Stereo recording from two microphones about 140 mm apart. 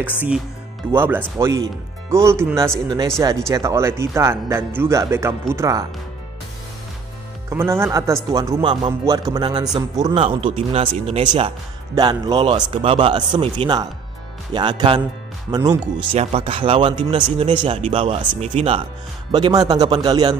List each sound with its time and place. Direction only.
0.9 s speech: 15° right (ahead or behind)
7.4 s speech: 20° right (ahead or behind)
10.1 s speech: 40° right (ahead or behind)
11.9 s speech: 30° right (ahead or behind)
16.2 s speech: 45° right (ahead or behind)
19.3 s speech: 30° right (ahead or behind)